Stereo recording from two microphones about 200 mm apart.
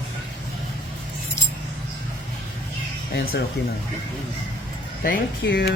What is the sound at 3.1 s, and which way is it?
Speech, 50° left (ahead or behind).